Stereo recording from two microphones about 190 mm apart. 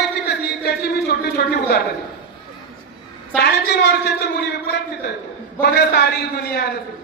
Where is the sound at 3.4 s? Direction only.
60° left (ahead or behind).